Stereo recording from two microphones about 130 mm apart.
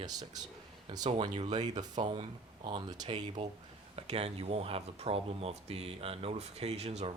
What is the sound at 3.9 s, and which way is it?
Speech, 55° right (ahead or behind).